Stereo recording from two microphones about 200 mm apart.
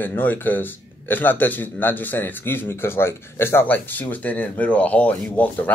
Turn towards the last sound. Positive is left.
turn(degrees=10)  # may be behind; listen again after turning